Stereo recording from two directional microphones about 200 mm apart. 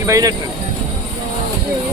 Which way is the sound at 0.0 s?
15° right (ahead or behind).